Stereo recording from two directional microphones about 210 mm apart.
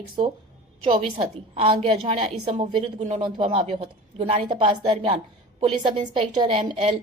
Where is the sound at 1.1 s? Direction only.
25° right (ahead or behind).